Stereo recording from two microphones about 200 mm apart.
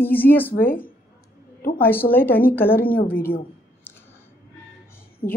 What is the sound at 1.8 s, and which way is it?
Speech, 10° left (ahead or behind).